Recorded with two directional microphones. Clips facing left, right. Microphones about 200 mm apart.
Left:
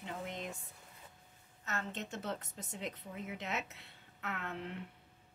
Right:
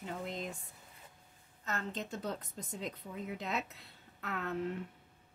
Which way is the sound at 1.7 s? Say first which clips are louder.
Right 1 dB; 35° right (ahead or behind).